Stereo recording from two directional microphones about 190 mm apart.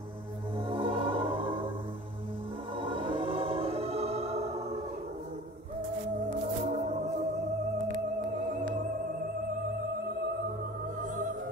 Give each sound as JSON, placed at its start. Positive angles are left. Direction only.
{"t": 0.7, "sound": "music", "side_deg": -25}
{"t": 2.8, "sound": "music", "side_deg": -25}
{"t": 6.6, "sound": "music", "side_deg": -35}